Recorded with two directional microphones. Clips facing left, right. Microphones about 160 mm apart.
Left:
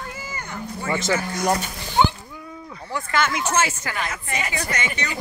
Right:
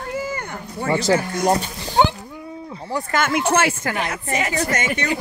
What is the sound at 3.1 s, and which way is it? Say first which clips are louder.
Speech: right 3 dB; 55° right (ahead or behind).